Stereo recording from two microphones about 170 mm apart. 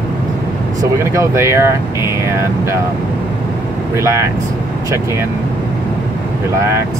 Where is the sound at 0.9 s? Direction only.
15° right (ahead or behind).